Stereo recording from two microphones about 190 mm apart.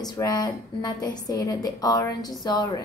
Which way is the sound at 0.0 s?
20° left (ahead or behind).